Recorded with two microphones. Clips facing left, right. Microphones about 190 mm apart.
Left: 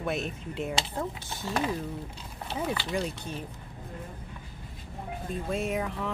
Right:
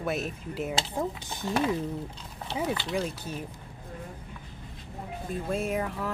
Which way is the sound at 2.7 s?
Centre (ahead or behind).